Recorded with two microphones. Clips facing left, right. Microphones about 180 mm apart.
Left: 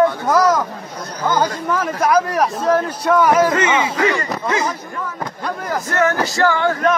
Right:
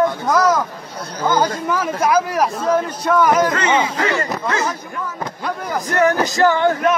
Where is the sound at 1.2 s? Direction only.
Centre (ahead or behind).